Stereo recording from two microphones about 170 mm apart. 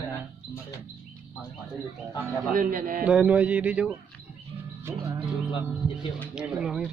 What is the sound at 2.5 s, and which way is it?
Speech, 55° right (ahead or behind).